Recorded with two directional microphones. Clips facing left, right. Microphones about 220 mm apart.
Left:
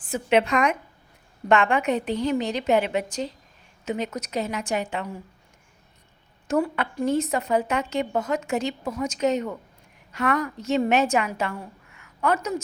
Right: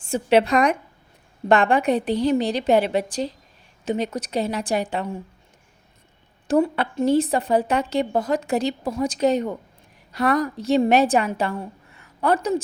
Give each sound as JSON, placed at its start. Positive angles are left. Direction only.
{"t": 0.1, "sound": "a woman's voice", "side_deg": -35}
{"t": 6.5, "sound": "a woman's voice", "side_deg": -30}